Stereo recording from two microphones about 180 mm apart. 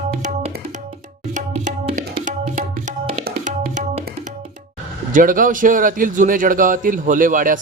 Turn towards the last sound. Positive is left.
turn(degrees=-50)  # may be behind; listen again after turning